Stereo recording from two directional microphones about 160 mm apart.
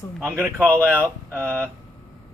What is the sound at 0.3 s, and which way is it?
Speech, 15° right (ahead or behind).